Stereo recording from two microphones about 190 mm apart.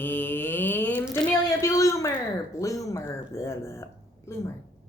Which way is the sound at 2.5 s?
15° left (ahead or behind).